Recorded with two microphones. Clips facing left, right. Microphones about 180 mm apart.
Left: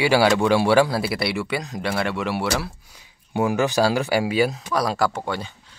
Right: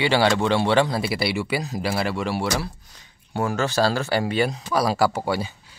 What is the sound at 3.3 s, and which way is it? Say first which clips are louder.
Speech: left 3 dB; 15° left (ahead or behind).